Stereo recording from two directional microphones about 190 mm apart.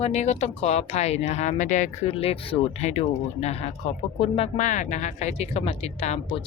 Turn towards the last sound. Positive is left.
turn(degrees=35)  # may be behind; listen again after turning